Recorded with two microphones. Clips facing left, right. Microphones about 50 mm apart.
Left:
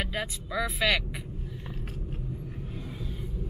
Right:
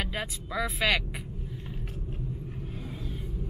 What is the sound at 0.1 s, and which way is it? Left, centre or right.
Speech, centre.